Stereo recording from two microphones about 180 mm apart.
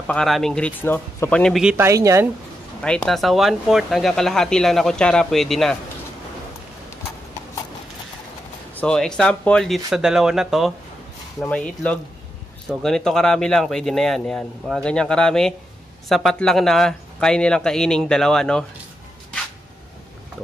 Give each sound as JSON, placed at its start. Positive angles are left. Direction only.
{"t": 0.0, "sound": "speech", "side_deg": 5}
{"t": 1.9, "sound": "speech", "side_deg": -15}
{"t": 3.1, "sound": "speech", "side_deg": 0}
{"t": 8.7, "sound": "speech", "side_deg": 5}